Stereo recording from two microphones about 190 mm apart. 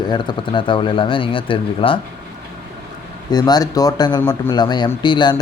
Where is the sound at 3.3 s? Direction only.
20° left (ahead or behind).